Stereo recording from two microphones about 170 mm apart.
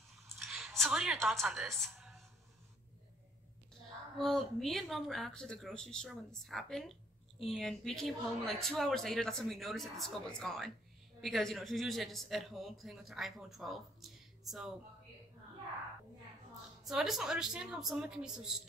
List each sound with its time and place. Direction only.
0.4 s a woman's voice: centre (ahead or behind)
4.2 s a woman's voice: centre (ahead or behind)
16.8 s a woman's voice: centre (ahead or behind)